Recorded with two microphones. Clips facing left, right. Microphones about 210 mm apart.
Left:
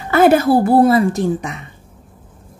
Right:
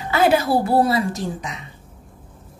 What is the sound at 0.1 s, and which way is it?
A woman's voice, 50° left (ahead or behind).